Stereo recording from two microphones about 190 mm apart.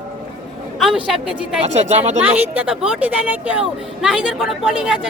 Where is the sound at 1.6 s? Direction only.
35° right (ahead or behind).